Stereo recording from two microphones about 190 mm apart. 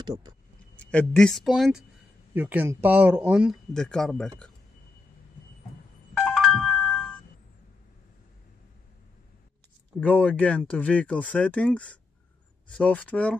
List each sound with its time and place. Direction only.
0.0 s speech: 20° right (ahead or behind)
0.7 s speech: 5° left (ahead or behind)
6.1 s music: 5° left (ahead or behind)
9.9 s speech: 10° left (ahead or behind)